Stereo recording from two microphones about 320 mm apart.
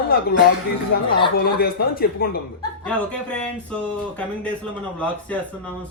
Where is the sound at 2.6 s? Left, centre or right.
Centre.